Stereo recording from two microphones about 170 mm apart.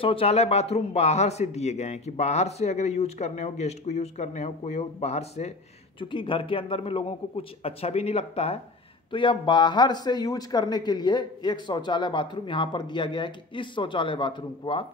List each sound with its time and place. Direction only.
0.0 s a man's voice: 35° left (ahead or behind)